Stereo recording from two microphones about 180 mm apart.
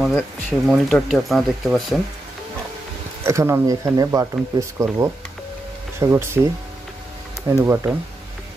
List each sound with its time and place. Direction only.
0.0 s speech: centre (ahead or behind)
3.3 s speech: 15° right (ahead or behind)
7.4 s speech: 15° right (ahead or behind)